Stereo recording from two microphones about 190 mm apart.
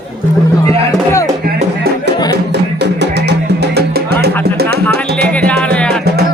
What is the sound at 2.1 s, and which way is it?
Music, 20° left (ahead or behind).